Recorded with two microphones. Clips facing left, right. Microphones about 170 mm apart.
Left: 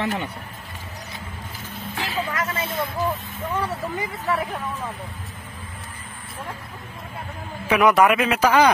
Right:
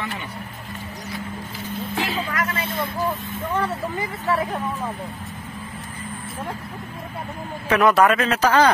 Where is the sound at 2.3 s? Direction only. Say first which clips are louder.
Right 1 dB; 25° left (ahead or behind).